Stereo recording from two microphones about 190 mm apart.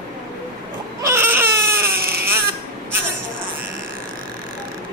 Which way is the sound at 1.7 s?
55° right (ahead or behind).